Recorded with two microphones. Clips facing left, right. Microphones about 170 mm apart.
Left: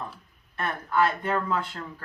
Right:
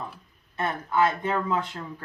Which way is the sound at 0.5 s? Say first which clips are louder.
Right 1 dB; 20° right (ahead or behind).